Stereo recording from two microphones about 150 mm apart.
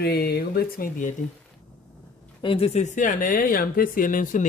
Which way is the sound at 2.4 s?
40° left (ahead or behind).